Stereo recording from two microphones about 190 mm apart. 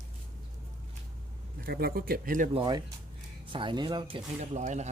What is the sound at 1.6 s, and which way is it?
Speech, 55° right (ahead or behind).